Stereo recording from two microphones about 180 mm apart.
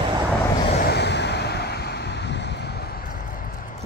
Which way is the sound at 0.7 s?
65° left (ahead or behind).